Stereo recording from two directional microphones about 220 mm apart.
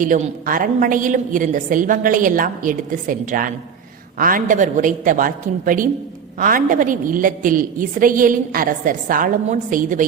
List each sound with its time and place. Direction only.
0.0 s a woman's voice: 35° right (ahead or behind)